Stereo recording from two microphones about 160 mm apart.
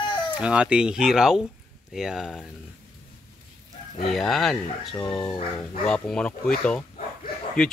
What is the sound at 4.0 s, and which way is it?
Speech, centre (ahead or behind).